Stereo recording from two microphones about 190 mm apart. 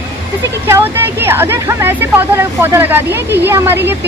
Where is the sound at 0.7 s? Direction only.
10° right (ahead or behind).